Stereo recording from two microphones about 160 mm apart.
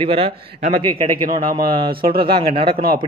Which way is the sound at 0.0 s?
35° right (ahead or behind).